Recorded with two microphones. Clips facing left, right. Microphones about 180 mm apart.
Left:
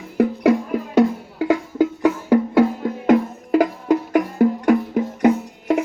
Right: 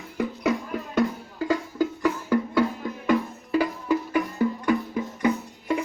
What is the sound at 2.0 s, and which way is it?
Music, 70° left (ahead or behind).